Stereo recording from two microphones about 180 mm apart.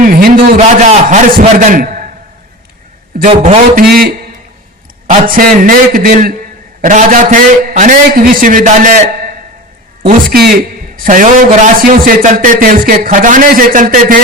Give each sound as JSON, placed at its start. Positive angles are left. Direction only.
{"t": 0.0, "sound": "a man's voice", "side_deg": -50}
{"t": 3.2, "sound": "a man's voice", "side_deg": -40}
{"t": 3.8, "sound": "a man's voice", "side_deg": -55}
{"t": 10.1, "sound": "a man's voice", "side_deg": -60}